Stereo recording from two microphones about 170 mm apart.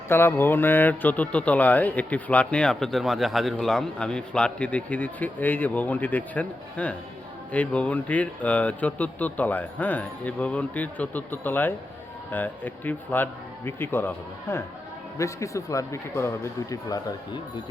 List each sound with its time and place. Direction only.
0.1 s speech: 15° left (ahead or behind)